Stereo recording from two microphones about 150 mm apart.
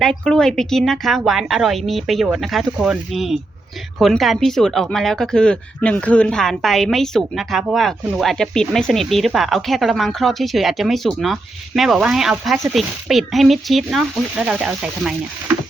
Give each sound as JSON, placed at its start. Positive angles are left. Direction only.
{"t": 0.3, "sound": "speech", "side_deg": 5}